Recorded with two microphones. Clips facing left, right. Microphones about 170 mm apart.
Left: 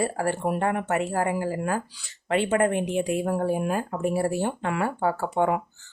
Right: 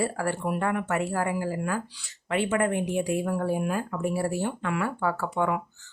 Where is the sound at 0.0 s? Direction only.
30° left (ahead or behind).